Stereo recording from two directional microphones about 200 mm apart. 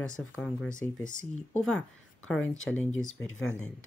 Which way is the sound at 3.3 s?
80° left.